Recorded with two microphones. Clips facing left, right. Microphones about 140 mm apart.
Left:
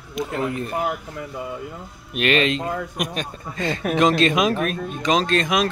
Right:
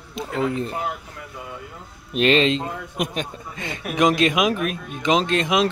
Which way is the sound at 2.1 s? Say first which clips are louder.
Right 2 dB; 25° right (ahead or behind).